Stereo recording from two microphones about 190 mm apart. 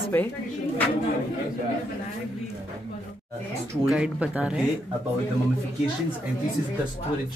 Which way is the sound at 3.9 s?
5° right (ahead or behind).